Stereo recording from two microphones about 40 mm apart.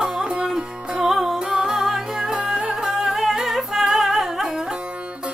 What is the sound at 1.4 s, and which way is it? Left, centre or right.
Music, centre.